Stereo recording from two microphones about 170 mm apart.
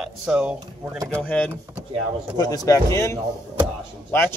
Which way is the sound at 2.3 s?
20° left (ahead or behind).